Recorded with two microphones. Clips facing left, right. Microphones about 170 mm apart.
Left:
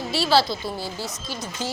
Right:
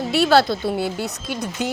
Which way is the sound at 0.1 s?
55° right (ahead or behind).